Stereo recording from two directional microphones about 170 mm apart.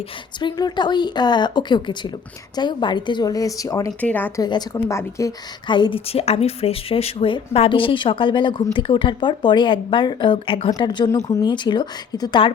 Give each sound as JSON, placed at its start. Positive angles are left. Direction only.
{"t": 0.3, "sound": "a woman's voice", "side_deg": 25}
{"t": 4.4, "sound": "a woman's voice", "side_deg": 20}